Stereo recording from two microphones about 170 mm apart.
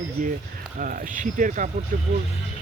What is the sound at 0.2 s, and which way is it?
Speech, 50° right (ahead or behind).